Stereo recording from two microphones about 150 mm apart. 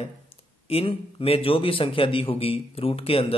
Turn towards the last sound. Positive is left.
turn(degrees=40)  # may be behind; listen again after turning